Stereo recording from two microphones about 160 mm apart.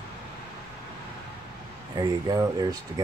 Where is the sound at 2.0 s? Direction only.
25° right (ahead or behind).